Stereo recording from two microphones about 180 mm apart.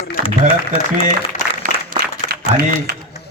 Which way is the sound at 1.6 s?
50° right (ahead or behind).